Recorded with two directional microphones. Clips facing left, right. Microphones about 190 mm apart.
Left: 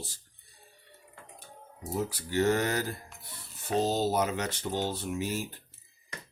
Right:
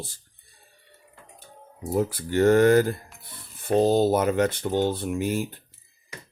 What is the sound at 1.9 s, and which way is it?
Speech, 55° right (ahead or behind).